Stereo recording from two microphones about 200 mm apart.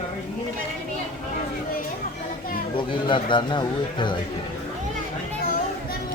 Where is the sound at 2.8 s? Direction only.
25° left (ahead or behind).